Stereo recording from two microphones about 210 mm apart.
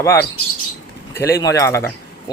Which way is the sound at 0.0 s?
15° left (ahead or behind).